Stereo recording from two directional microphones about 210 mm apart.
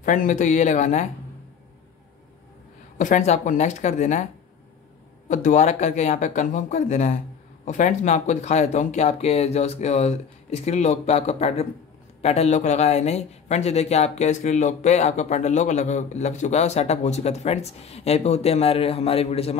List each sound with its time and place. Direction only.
0.0 s speech: 35° left (ahead or behind)
3.0 s speech: 35° left (ahead or behind)
5.3 s speech: 35° left (ahead or behind)